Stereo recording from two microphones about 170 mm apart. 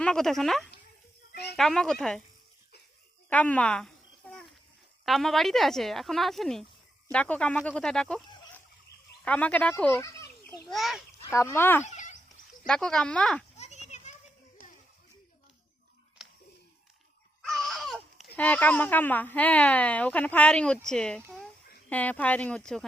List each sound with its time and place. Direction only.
0.0 s speech: 5° left (ahead or behind)
1.3 s a sound: 75° left (ahead or behind)
1.5 s speech: 5° left (ahead or behind)
3.2 s babbling: 10° left (ahead or behind)
5.0 s a woman's voice: centre (ahead or behind)
9.2 s a woman's voice: 10° left (ahead or behind)
10.7 s speech: centre (ahead or behind)
11.3 s a woman's voice: 15° left (ahead or behind)
13.6 s children playing: 40° left (ahead or behind)
16.2 s a sound: centre (ahead or behind)
17.4 s a sound: centre (ahead or behind)
18.3 s a woman's voice: 10° left (ahead or behind)